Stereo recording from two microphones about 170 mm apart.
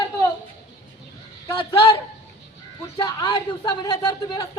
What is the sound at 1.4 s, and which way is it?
Speech, 30° left (ahead or behind).